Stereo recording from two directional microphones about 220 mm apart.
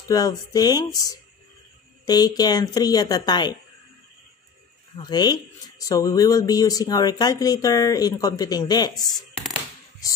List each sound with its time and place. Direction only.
0.1 s speech: 15° left (ahead or behind)
4.9 s speech: 20° left (ahead or behind)